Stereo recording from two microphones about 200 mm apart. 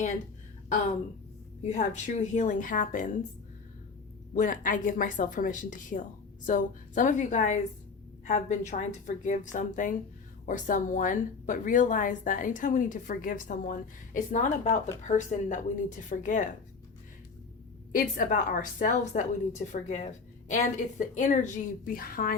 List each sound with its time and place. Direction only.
1.6 s speech: 35° left (ahead or behind)
4.4 s speech: 40° left (ahead or behind)
17.9 s speech: 40° left (ahead or behind)
21.0 s speech: 40° left (ahead or behind)